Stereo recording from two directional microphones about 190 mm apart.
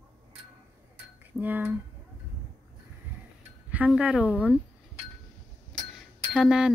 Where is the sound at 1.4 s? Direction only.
10° right (ahead or behind).